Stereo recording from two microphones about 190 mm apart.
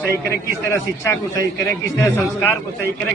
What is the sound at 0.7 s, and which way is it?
A woman's voice, 15° left (ahead or behind).